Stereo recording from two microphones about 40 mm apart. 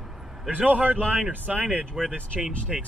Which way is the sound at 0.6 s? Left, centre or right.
Right.